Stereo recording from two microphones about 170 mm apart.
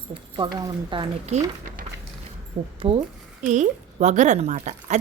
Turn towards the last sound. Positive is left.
turn(degrees=-45)  # may be behind; listen again after turning